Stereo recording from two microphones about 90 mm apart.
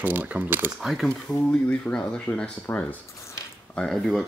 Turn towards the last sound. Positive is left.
turn(degrees=0)  # may be behind; listen again after turning